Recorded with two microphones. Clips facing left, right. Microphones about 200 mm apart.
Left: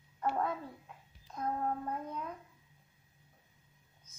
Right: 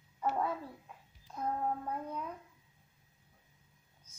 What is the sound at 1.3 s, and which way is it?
Child singing, 5° right (ahead or behind).